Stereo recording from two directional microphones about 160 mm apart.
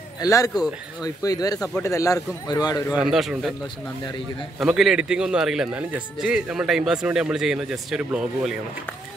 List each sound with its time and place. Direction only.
0.2 s speech: 20° left (ahead or behind)
3.0 s a man's voice: 5° right (ahead or behind)
4.6 s a man's voice: centre (ahead or behind)